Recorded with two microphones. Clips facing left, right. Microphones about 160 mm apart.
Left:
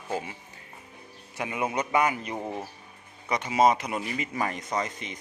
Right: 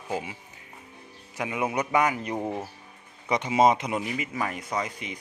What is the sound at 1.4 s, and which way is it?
Speech, 15° right (ahead or behind).